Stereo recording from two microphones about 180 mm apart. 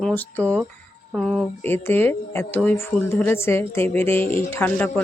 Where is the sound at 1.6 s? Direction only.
10° left (ahead or behind).